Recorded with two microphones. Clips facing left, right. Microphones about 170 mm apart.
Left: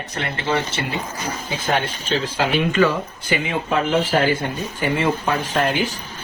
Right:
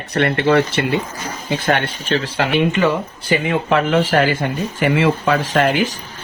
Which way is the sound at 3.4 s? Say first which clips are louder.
Right 4 dB; 85° right.